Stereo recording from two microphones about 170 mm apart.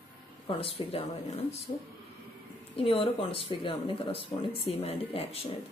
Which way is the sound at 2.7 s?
35° left (ahead or behind).